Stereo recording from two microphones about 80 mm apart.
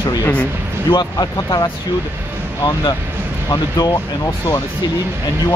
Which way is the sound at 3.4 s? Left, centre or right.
Left.